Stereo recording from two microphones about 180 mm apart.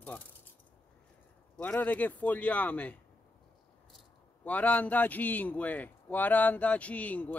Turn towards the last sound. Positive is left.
turn(degrees=10)  # may be behind; listen again after turning